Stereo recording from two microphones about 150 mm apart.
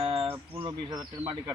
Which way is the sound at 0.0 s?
40° right (ahead or behind).